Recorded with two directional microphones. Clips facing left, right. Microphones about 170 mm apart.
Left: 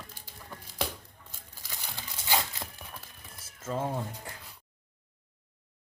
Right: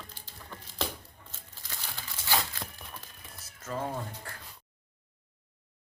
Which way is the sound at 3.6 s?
25° left (ahead or behind).